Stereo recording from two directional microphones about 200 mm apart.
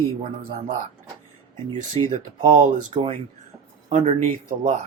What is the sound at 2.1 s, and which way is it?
Speech, 40° right (ahead or behind).